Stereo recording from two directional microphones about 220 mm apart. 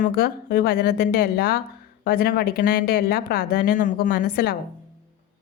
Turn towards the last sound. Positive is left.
turn(degrees=45)  # may be behind; listen again after turning